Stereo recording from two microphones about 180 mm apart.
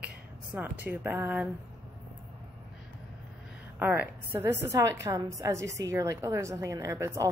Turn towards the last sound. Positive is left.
turn(degrees=-15)  # may be behind; listen again after turning